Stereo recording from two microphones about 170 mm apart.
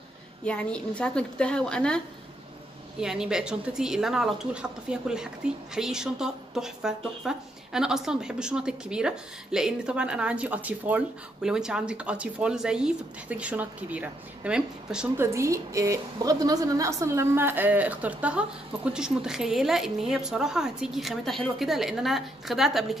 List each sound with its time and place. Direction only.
0.5 s speech: 5° left (ahead or behind)
3.0 s speech: 5° right (ahead or behind)
15.2 s a woman's voice: 15° right (ahead or behind); by 22.9 s centre (ahead or behind)